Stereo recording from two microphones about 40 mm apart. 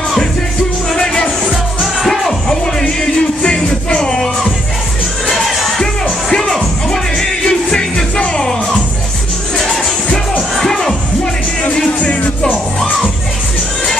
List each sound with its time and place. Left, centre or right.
0.9 s music: centre
2.6 s music: left
5.3 s music: centre
6.3 s music: centre
10.6 s music: centre
11.6 s music: left